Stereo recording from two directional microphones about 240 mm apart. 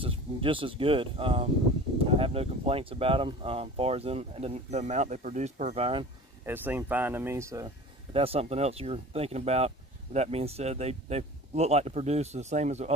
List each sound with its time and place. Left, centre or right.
0.0 s speech: right
6.4 s speech: centre; by 12.9 s right